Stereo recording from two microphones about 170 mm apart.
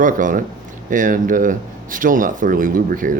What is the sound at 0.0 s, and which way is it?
Speech, 50° right (ahead or behind).